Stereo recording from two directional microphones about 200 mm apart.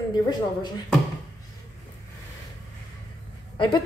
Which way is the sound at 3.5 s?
25° left (ahead or behind).